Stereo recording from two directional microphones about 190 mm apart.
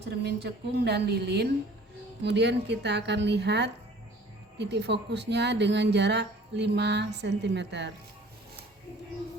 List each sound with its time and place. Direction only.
0.2 s speech: 60° right (ahead or behind)